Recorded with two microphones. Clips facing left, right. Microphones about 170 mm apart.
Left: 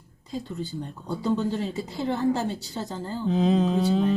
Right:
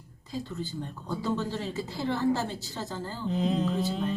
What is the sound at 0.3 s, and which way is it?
A woman's voice, 20° left (ahead or behind).